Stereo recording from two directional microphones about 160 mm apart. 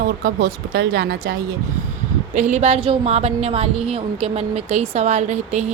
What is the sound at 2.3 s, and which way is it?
A woman's voice, 50° right (ahead or behind).